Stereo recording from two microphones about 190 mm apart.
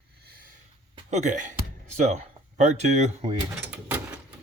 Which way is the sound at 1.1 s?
40° right (ahead or behind).